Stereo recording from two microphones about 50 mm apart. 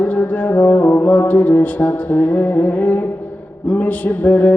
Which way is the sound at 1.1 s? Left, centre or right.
Left.